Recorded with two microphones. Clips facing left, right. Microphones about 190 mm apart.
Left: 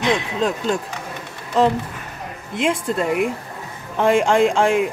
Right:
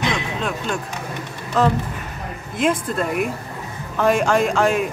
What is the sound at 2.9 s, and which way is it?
Speech, 20° left (ahead or behind).